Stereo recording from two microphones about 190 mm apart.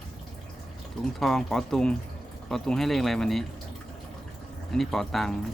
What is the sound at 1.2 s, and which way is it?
Speech, centre (ahead or behind).